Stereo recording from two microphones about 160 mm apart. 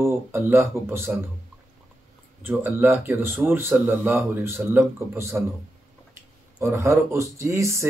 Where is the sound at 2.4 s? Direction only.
15° right (ahead or behind).